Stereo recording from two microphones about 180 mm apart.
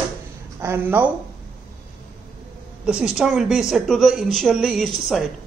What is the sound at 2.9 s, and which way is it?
Speech, 5° right (ahead or behind).